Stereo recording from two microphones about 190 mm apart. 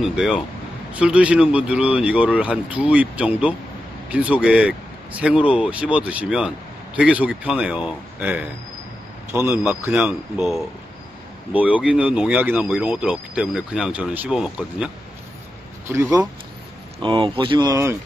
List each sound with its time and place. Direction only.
0.0 s speech: 5° right (ahead or behind)
9.5 s speech: 5° right (ahead or behind)
15.9 s speech: 15° right (ahead or behind)
17.0 s speech: 25° right (ahead or behind)